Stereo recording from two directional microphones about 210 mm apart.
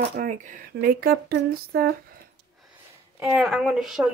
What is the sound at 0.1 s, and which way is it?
Speech, 40° right (ahead or behind).